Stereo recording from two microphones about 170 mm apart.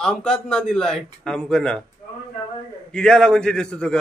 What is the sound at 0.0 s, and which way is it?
A man's voice, 5° left (ahead or behind).